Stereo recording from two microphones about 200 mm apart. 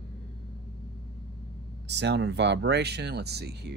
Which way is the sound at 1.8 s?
60° right (ahead or behind).